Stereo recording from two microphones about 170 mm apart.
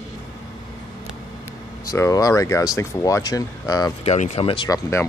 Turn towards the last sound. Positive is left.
turn(degrees=30)  # may be behind; listen again after turning